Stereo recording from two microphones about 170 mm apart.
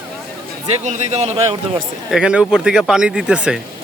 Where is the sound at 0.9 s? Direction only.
45° right (ahead or behind).